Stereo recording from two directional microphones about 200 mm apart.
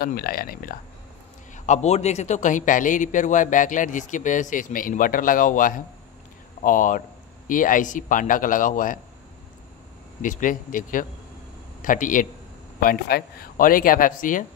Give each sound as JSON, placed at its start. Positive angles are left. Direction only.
{"t": 0.0, "sound": "speech", "side_deg": 50}
{"t": 1.5, "sound": "a man's voice", "side_deg": 35}
{"t": 10.2, "sound": "a man's voice", "side_deg": 40}